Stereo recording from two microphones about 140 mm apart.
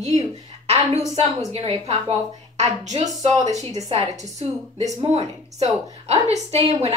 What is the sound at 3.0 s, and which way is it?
Speech, 25° right (ahead or behind).